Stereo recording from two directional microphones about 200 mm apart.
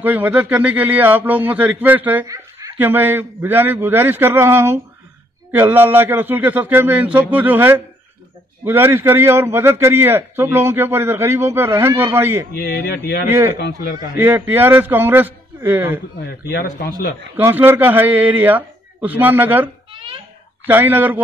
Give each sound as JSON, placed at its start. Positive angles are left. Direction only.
{"t": 0.0, "sound": "a man's voice", "side_deg": -10}
{"t": 12.5, "sound": "a man's voice", "side_deg": 55}
{"t": 14.1, "sound": "a man's voice", "side_deg": -10}
{"t": 16.2, "sound": "a man's voice", "side_deg": 55}
{"t": 17.4, "sound": "a man's voice", "side_deg": -10}
{"t": 19.9, "sound": "a sound", "side_deg": -25}
{"t": 20.6, "sound": "a man's voice", "side_deg": -10}